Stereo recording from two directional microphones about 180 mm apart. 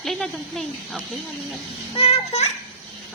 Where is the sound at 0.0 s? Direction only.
Centre (ahead or behind).